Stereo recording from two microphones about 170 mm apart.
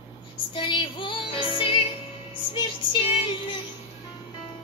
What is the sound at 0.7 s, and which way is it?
Music, 30° left (ahead or behind).